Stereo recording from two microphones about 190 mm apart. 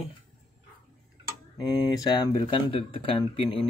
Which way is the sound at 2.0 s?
20° left (ahead or behind).